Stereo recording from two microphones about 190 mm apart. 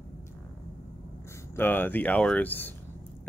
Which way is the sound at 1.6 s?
10° left (ahead or behind).